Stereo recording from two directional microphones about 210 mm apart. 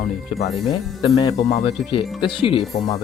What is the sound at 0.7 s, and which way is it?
Speech, 25° left (ahead or behind).